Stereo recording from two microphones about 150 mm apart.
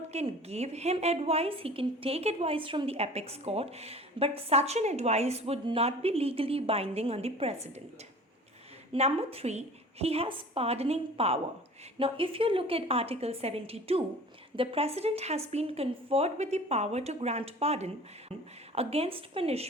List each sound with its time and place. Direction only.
0.1 s a woman's voice: 45° right (ahead or behind)
8.9 s a woman's voice: 40° right (ahead or behind)